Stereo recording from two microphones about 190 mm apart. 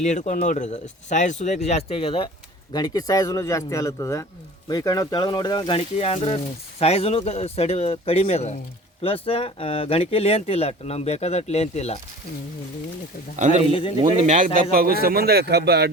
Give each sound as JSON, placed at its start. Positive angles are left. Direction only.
{"t": 0.0, "sound": "speech", "side_deg": 40}
{"t": 13.3, "sound": "a man's voice", "side_deg": -40}